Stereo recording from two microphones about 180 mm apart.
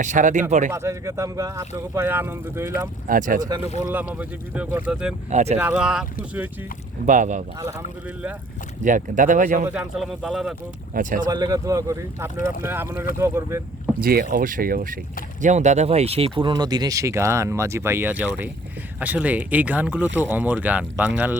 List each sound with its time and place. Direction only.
0.0 s speech: 45° right (ahead or behind)
0.7 s speech: 15° right (ahead or behind)
3.1 s speech: 45° right (ahead or behind)
3.8 s speech: 10° right (ahead or behind)
5.3 s speech: 40° right (ahead or behind)
5.5 s speech: 5° right (ahead or behind)
7.0 s speech: 45° right (ahead or behind)
8.8 s speech: 45° right (ahead or behind)
9.6 s speech: 5° right (ahead or behind)
10.9 s speech: 50° right (ahead or behind)
11.3 s speech: 20° right (ahead or behind)
14.0 s speech: 55° right (ahead or behind); by 21.1 s 10° right (ahead or behind)